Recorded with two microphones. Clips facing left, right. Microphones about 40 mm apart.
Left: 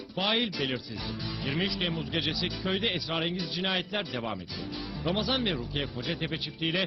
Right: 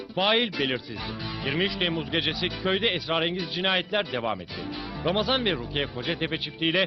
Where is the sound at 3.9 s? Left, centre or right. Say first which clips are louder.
Right 6 dB; centre.